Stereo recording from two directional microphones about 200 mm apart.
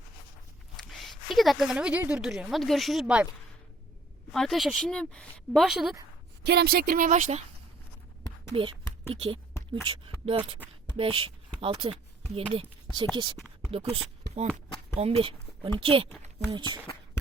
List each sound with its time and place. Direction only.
0.8 s a woman's voice: centre (ahead or behind)
4.3 s speech: centre (ahead or behind)
6.4 s speech: 55° right (ahead or behind); by 7.4 s 35° right (ahead or behind)
8.5 s speech: 25° right (ahead or behind)